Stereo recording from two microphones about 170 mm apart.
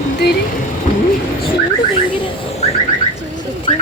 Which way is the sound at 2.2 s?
40° left (ahead or behind).